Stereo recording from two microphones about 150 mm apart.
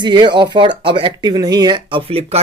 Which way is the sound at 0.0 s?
30° right (ahead or behind).